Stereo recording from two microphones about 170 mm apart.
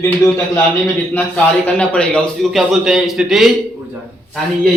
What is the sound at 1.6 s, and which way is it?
A man's voice, 10° left (ahead or behind).